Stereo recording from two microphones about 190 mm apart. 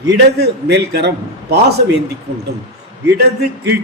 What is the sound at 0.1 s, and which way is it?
A man's voice, 60° right (ahead or behind).